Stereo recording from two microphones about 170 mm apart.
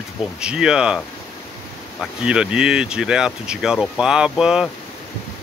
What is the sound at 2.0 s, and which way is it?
Speech, 5° right (ahead or behind).